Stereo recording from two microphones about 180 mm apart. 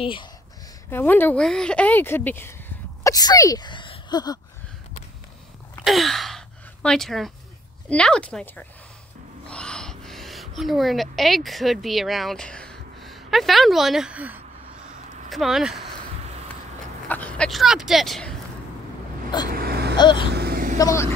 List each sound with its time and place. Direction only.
0.0 s speech: 30° left (ahead or behind)
0.8 s speech: 10° left (ahead or behind)
5.9 s a sound: centre (ahead or behind)
7.9 s speech: 5° left (ahead or behind)
17.1 s speech: 5° left (ahead or behind)
19.5 s vehicle: 60° right (ahead or behind)
20.0 s speech: 25° left (ahead or behind)
20.3 s vehicle: 55° right (ahead or behind)
20.7 s speech: 15° left (ahead or behind)